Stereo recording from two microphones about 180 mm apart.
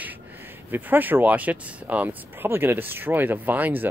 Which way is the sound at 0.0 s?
10° right (ahead or behind).